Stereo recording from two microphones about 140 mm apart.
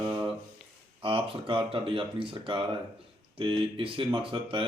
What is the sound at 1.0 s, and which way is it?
Speech, 40° right (ahead or behind).